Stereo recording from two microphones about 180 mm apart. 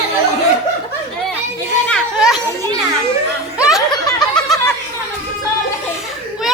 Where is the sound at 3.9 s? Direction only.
25° left (ahead or behind).